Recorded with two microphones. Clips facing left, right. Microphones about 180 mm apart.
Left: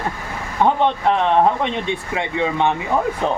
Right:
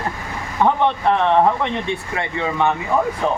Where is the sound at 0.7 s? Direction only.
20° left (ahead or behind).